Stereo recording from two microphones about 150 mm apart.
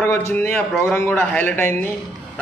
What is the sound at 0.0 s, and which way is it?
A man's voice, 15° left (ahead or behind).